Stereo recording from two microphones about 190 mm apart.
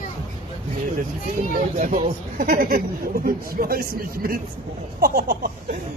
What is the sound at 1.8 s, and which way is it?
Speech, 40° right (ahead or behind).